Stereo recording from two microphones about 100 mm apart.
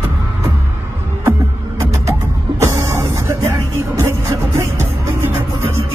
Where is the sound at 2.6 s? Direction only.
25° right (ahead or behind).